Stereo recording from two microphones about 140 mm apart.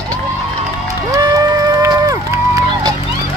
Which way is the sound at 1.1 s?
25° right (ahead or behind).